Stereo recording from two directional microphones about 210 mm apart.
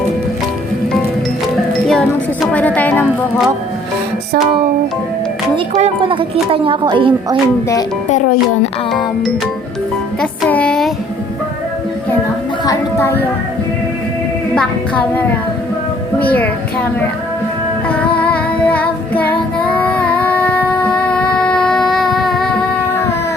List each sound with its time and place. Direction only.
1.9 s music: 5° left (ahead or behind)
5.5 s a woman's voice: 30° right (ahead or behind)
8.1 s speech: 35° left (ahead or behind)
10.2 s music: 5° left (ahead or behind)
12.6 s a sound: 10° left (ahead or behind)
14.5 s music: 5° left (ahead or behind)
16.2 s music: 10° left (ahead or behind)
18.2 s child singing: 5° left (ahead or behind)